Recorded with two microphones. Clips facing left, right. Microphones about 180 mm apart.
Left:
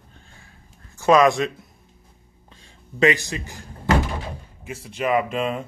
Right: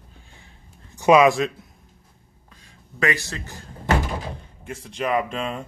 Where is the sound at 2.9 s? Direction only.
20° left (ahead or behind).